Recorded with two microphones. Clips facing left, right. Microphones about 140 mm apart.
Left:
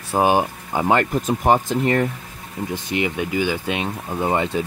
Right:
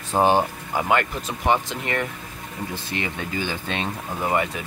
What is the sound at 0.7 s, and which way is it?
Speech, 35° left (ahead or behind).